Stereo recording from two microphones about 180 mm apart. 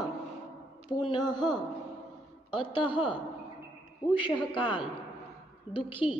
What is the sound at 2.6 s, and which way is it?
Speech, 30° left (ahead or behind).